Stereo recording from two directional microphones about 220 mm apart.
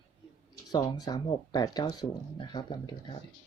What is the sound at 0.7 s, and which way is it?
Speech, 20° left (ahead or behind).